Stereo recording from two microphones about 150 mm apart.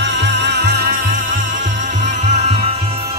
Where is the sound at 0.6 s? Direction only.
90° right; by 2.8 s 45° right (ahead or behind).